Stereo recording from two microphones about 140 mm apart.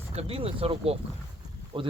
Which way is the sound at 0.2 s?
45° right (ahead or behind).